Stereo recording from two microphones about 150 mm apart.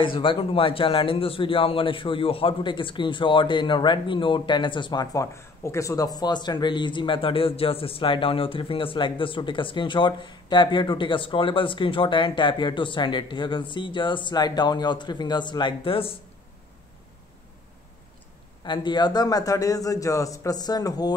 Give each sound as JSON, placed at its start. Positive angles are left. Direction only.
{"t": 0.0, "sound": "a man's voice", "side_deg": 35}
{"t": 18.6, "sound": "a man's voice", "side_deg": 30}